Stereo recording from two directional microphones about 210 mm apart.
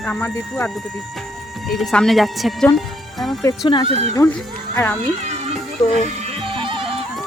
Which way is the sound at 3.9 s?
30° right (ahead or behind).